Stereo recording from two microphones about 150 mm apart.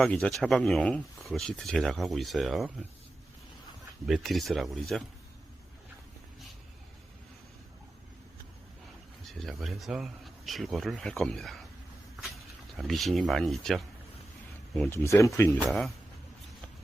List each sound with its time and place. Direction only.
0.0 s speech: 5° left (ahead or behind)
4.0 s speech: centre (ahead or behind)
9.2 s speech: centre (ahead or behind)
12.9 s speech: centre (ahead or behind)
14.8 s speech: 15° left (ahead or behind)
15.5 s speech: 5° left (ahead or behind)